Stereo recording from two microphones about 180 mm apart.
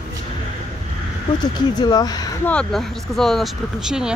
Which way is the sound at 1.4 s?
25° left (ahead or behind).